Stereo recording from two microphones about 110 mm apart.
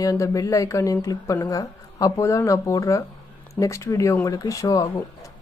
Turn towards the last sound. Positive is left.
turn(degrees=35)  # may be behind; listen again after turning